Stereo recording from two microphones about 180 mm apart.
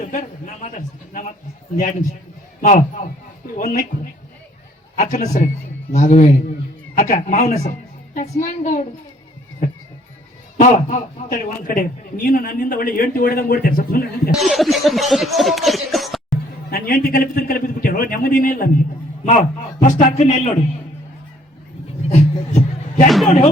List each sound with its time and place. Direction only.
0.0 s a sound: 45° left (ahead or behind)
0.7 s a man's voice: 40° left (ahead or behind)
4.9 s a man's voice: 40° left (ahead or behind)
10.6 s a man's voice: 45° left (ahead or behind)
14.3 s speech: centre (ahead or behind)
16.6 s a man's voice: 55° left (ahead or behind)
19.8 s speech: 40° left (ahead or behind)
22.1 s a sound: 40° left (ahead or behind)
23.0 s speech: centre (ahead or behind)